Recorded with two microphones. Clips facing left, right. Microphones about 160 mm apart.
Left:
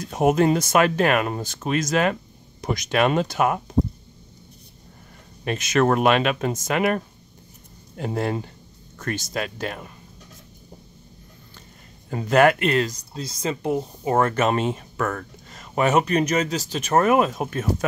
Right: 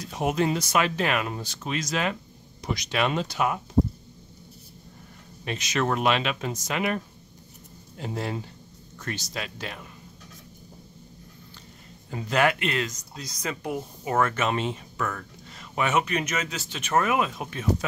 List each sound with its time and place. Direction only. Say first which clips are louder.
0.0 s speech: left 7 dB; 50° left (ahead or behind)
5.4 s speech: left 7 dB; 50° left (ahead or behind)
8.0 s speech: left 6 dB; 55° left (ahead or behind)
12.1 s speech: left 7 dB; 50° left (ahead or behind)